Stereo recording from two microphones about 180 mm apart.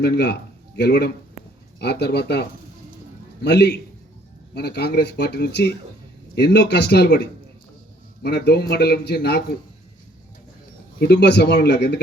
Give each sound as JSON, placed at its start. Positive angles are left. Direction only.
{"t": 0.0, "sound": "speech", "side_deg": 65}
{"t": 11.0, "sound": "speech", "side_deg": 65}